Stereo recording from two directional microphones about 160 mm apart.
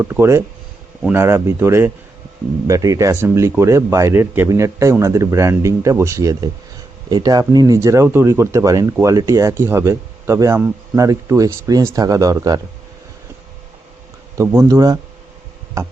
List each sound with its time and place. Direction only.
0.0 s speech: 15° right (ahead or behind)
14.3 s speech: 20° right (ahead or behind)